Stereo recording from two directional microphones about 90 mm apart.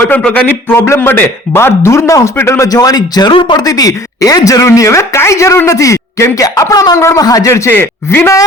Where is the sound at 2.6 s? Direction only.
45° left (ahead or behind).